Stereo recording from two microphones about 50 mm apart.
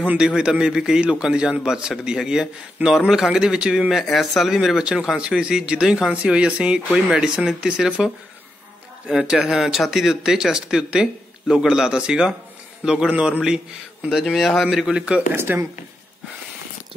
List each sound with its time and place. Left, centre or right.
0.2 s a man's voice: centre
3.9 s a man's voice: centre
9.1 s a man's voice: centre
13.1 s speech: right
14.2 s a man's voice: centre
15.3 s speech: right